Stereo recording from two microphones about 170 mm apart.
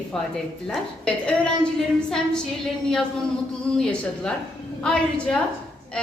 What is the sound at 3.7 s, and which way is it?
Speech, 5° left (ahead or behind).